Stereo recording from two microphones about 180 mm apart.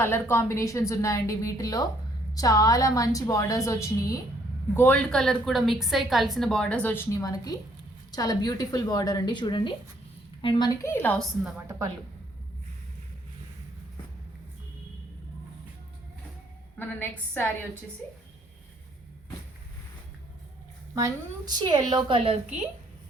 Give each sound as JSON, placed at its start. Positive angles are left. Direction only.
{"t": 0.0, "sound": "a woman's voice", "side_deg": 10}
{"t": 16.7, "sound": "a woman's voice", "side_deg": 10}
{"t": 21.5, "sound": "a woman's voice", "side_deg": -25}